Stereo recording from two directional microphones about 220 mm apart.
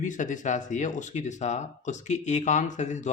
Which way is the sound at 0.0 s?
35° left (ahead or behind).